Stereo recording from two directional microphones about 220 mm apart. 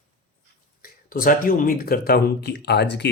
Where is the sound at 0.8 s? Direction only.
40° left (ahead or behind).